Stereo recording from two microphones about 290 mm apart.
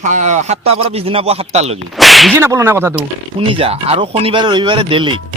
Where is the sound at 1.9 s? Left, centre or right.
Centre.